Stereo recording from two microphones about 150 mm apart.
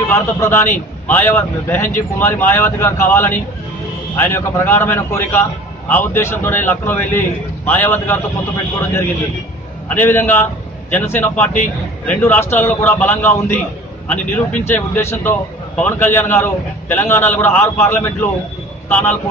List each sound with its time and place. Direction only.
0.1 s a man's voice: 15° left (ahead or behind)
9.8 s a man's voice: 15° left (ahead or behind)